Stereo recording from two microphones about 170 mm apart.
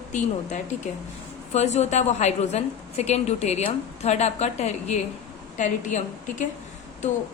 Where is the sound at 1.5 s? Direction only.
40° left (ahead or behind).